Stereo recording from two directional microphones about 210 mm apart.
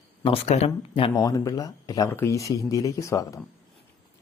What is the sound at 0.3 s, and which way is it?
Speech, 30° left (ahead or behind).